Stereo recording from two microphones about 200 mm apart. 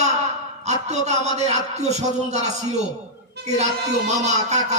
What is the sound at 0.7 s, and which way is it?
Music, 35° right (ahead or behind).